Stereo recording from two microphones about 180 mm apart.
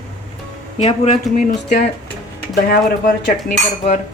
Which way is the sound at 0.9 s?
40° left (ahead or behind).